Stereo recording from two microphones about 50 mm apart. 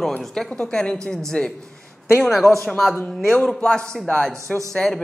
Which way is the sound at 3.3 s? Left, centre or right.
Centre.